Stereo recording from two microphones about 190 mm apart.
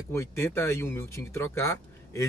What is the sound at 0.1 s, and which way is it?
Speech, 15° left (ahead or behind).